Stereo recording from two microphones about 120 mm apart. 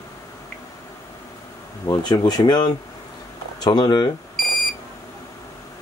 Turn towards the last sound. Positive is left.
turn(degrees=0)  # may be behind; listen again after turning